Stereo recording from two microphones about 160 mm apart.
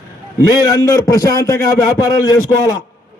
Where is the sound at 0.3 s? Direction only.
25° left (ahead or behind).